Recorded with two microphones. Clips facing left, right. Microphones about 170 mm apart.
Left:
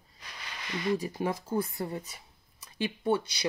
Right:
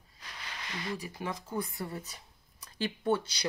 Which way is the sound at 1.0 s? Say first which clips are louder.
Left 6 dB; 40° left (ahead or behind).